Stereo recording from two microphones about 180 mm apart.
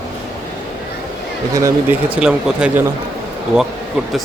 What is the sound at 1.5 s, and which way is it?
Speech, 15° right (ahead or behind).